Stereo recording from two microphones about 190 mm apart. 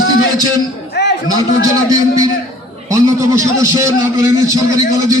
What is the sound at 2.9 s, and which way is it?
A man's voice, 15° right (ahead or behind).